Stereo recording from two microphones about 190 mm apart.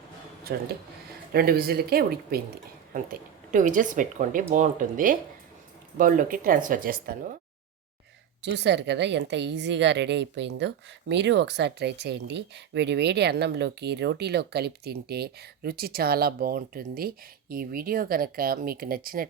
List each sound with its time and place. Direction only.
0.5 s speech: 55° right (ahead or behind)
8.4 s a woman's voice: 65° right (ahead or behind); by 19.3 s 50° right (ahead or behind)